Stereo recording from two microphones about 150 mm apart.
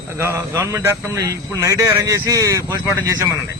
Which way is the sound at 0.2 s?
15° right (ahead or behind).